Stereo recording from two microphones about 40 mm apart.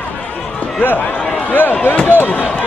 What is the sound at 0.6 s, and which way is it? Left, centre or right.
A man's voice, left.